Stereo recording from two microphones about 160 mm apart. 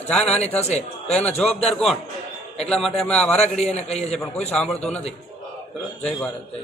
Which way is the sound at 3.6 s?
45° left (ahead or behind).